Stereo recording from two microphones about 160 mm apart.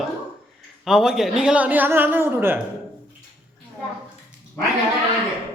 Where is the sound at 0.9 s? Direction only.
Centre (ahead or behind).